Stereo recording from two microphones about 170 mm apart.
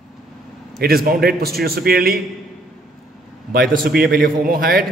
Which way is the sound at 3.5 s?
55° right (ahead or behind).